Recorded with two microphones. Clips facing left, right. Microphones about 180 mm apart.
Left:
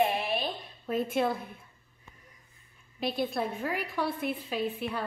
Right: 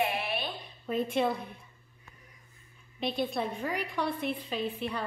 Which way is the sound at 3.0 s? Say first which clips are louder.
Left 1 dB; 5° left (ahead or behind).